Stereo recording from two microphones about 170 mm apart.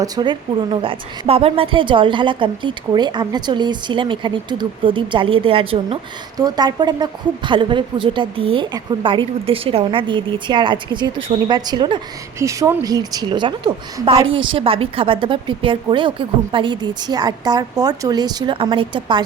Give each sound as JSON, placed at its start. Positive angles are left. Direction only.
{"t": 0.0, "sound": "a woman's voice", "side_deg": -25}
{"t": 6.3, "sound": "a woman's voice", "side_deg": -20}